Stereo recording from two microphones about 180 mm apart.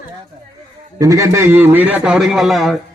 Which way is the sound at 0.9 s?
20° right (ahead or behind).